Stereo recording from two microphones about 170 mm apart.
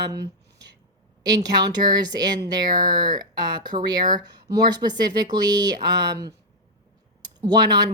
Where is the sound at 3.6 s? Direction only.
25° right (ahead or behind).